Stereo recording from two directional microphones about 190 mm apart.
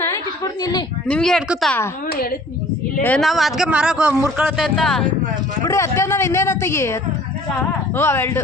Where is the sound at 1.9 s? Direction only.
50° left (ahead or behind).